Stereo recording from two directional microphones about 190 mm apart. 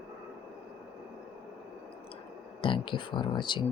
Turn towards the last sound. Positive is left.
turn(degrees=25)  # may be behind; listen again after turning